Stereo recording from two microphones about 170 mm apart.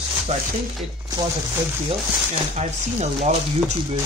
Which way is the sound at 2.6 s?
40° right (ahead or behind).